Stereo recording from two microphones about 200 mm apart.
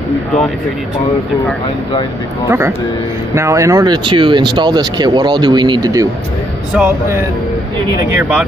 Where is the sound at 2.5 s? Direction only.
10° right (ahead or behind).